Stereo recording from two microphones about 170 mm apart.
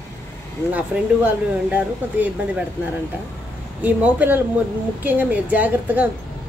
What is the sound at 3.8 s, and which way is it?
A woman's voice, 10° right (ahead or behind).